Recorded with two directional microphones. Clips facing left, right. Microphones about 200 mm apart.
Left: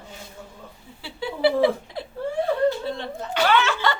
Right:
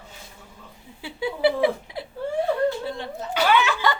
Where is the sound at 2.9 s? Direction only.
10° right (ahead or behind).